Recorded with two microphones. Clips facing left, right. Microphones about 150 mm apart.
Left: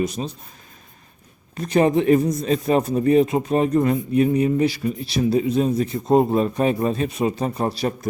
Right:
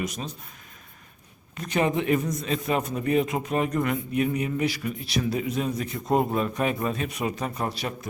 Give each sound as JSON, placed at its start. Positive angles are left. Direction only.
{"t": 0.0, "sound": "a man's voice", "side_deg": 30}
{"t": 1.5, "sound": "a man's voice", "side_deg": 35}